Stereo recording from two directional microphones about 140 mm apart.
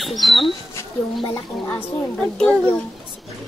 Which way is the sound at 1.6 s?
10° left (ahead or behind).